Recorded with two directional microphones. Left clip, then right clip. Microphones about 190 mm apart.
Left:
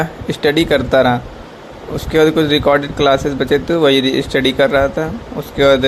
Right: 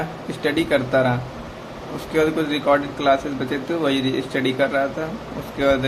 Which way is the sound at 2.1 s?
30° left (ahead or behind).